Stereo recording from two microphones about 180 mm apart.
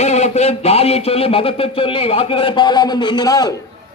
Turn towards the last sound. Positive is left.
turn(degrees=20)  # may be behind; listen again after turning